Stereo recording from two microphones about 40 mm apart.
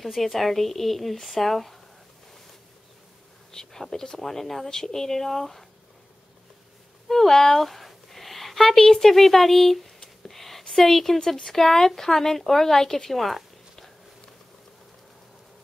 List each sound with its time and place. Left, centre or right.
0.0 s speech: centre
3.5 s speech: centre
7.1 s speech: centre
10.2 s a sound: centre
10.7 s speech: centre
11.1 s speech: left
11.4 s speech: centre